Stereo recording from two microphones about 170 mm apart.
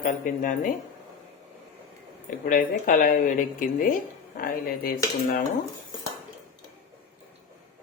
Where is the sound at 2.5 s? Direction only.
55° left (ahead or behind).